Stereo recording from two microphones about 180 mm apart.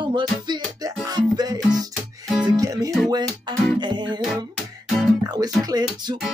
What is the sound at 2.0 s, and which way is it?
Music, centre (ahead or behind).